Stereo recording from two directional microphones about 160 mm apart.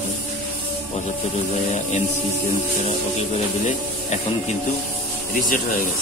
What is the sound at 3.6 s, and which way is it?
Speech, 45° left (ahead or behind).